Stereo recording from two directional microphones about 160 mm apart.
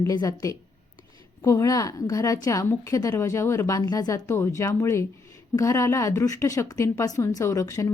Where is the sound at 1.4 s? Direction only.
20° left (ahead or behind).